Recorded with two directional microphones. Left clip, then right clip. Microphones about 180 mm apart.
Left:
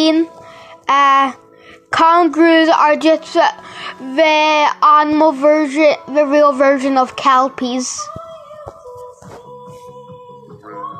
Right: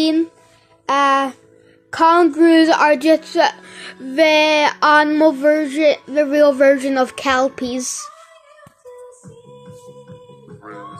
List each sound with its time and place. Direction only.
0.0 s speech: 5° right (ahead or behind)
0.8 s a woman's voice: 10° left (ahead or behind); by 8.1 s 5° right (ahead or behind)